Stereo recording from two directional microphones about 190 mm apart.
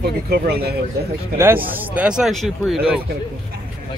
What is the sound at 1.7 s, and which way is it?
Speech, 5° right (ahead or behind).